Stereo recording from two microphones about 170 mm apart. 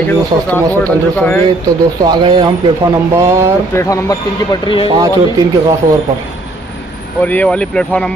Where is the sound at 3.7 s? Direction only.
20° left (ahead or behind).